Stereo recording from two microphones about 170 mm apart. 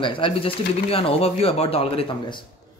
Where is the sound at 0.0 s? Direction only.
30° left (ahead or behind).